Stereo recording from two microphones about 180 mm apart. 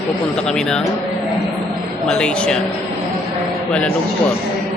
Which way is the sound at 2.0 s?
5° left (ahead or behind).